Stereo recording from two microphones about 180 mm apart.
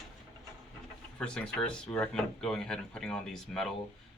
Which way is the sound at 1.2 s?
5° left (ahead or behind).